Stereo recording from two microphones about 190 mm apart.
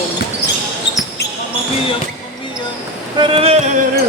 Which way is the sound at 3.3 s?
30° right (ahead or behind).